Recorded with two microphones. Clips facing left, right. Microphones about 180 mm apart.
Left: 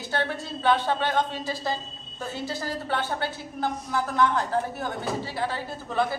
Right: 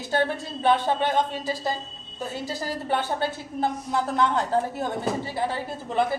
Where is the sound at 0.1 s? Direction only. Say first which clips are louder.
Right 4 dB; 20° right (ahead or behind).